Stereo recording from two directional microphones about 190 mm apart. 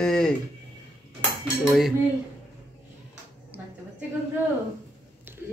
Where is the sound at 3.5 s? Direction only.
10° right (ahead or behind).